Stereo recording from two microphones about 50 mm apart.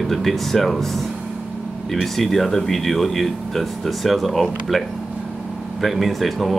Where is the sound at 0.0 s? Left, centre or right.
Centre.